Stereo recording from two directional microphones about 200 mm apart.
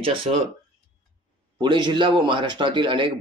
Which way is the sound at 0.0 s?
25° right (ahead or behind).